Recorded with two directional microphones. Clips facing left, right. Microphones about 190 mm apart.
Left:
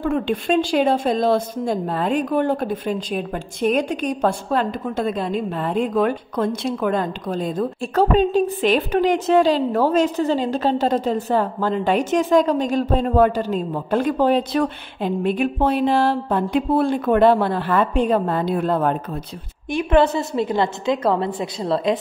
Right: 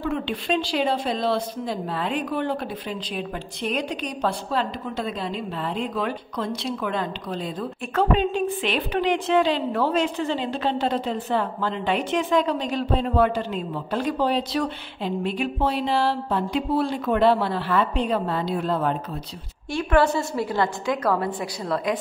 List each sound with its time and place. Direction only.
0.0 s a woman's voice: 50° left (ahead or behind)
19.7 s a woman's voice: 20° left (ahead or behind)